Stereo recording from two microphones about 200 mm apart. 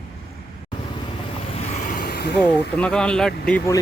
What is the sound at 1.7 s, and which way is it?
Vehicle, 40° left (ahead or behind).